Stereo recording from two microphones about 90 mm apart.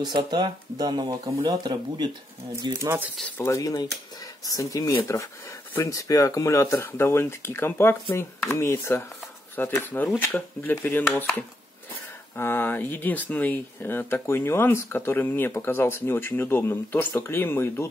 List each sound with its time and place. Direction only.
0.0 s speech: 55° right (ahead or behind)
2.8 s speech: 25° right (ahead or behind)
3.4 s speech: 40° left (ahead or behind); by 11.2 s 20° left (ahead or behind)
12.4 s speech: 25° left (ahead or behind)